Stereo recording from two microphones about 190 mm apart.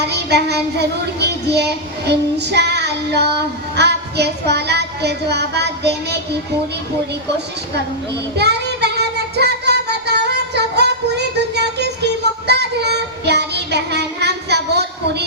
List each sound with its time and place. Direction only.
0.0 s child singing: 60° right (ahead or behind)
8.4 s child singing: 60° right (ahead or behind)